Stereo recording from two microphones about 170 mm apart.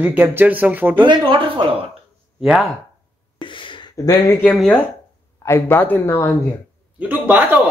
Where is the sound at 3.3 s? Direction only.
30° left (ahead or behind).